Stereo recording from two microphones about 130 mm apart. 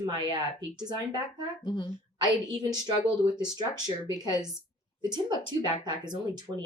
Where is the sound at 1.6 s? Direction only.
35° left (ahead or behind).